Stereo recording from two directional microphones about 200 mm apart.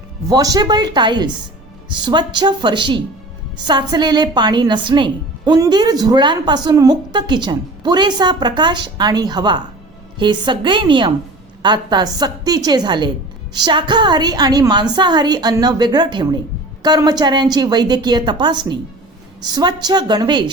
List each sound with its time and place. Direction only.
0.3 s a woman's voice: 20° right (ahead or behind)